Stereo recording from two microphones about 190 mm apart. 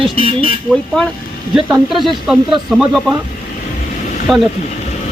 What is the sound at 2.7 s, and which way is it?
Speech, centre (ahead or behind).